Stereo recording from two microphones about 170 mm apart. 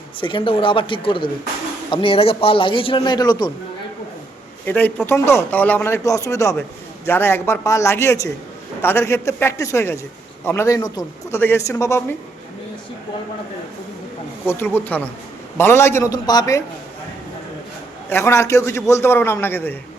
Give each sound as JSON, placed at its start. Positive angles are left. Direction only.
{"t": 0.2, "sound": "speech", "side_deg": 30}
{"t": 4.6, "sound": "a man's voice", "side_deg": 10}
{"t": 14.4, "sound": "a man's voice", "side_deg": 10}
{"t": 18.1, "sound": "a man's voice", "side_deg": 15}